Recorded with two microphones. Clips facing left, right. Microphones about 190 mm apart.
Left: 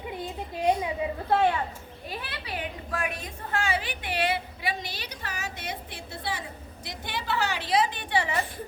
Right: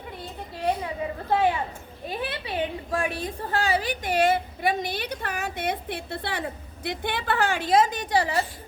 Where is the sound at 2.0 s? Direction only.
25° right (ahead or behind).